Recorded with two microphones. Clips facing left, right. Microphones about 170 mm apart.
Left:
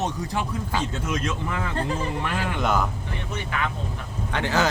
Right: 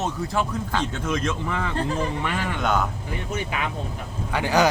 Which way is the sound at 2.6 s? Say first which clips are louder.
Even; centre (ahead or behind).